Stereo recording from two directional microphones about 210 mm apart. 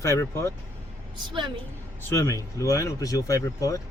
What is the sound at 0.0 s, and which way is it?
Speech, 15° left (ahead or behind).